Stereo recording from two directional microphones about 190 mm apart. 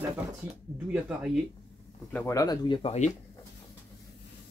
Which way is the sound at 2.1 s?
15° left (ahead or behind).